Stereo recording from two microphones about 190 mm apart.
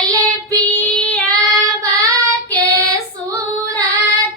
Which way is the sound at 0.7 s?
5° left (ahead or behind).